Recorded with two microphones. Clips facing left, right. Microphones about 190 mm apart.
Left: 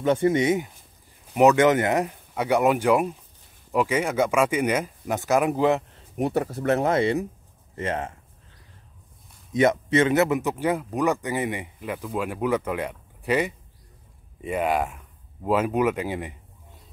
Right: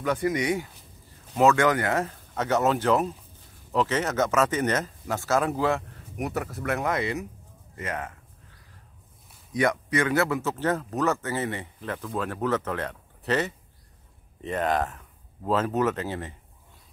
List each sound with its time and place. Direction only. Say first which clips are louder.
0.0 s speech: left 5 dB; 25° left (ahead or behind)
9.5 s speech: left 5 dB; 25° left (ahead or behind)